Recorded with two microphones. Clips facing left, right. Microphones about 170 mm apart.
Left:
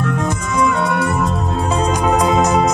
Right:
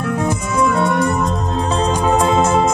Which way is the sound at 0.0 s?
10° right (ahead or behind).